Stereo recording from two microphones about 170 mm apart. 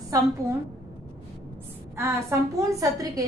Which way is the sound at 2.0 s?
15° right (ahead or behind).